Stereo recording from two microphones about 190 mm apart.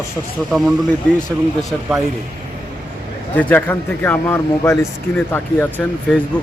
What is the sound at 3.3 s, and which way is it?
Speech, 10° left (ahead or behind).